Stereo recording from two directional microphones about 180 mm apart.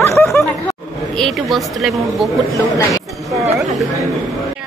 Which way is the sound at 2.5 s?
20° left (ahead or behind).